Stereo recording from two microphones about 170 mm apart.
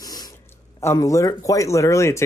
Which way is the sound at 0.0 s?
20° left (ahead or behind).